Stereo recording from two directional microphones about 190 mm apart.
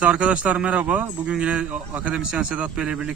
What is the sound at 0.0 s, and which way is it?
A man's voice, 5° right (ahead or behind).